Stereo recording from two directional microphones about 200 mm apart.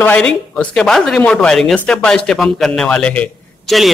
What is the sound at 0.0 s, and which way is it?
Speech, 5° left (ahead or behind).